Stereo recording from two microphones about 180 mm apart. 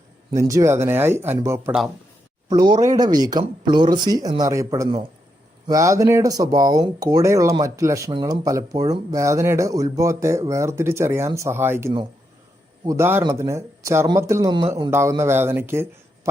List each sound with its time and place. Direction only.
0.3 s speech: 20° right (ahead or behind)